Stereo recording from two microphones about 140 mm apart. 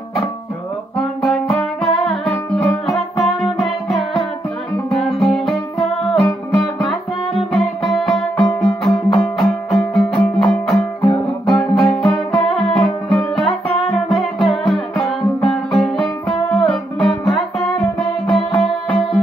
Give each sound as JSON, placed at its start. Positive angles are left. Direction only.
{"t": 0.9, "sound": "music", "side_deg": 5}